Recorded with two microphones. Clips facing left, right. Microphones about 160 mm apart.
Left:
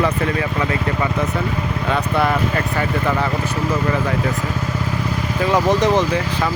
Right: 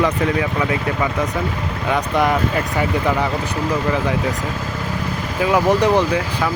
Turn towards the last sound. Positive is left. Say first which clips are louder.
# right 1 dB
turn(degrees=-10)  # may be behind; listen again after turning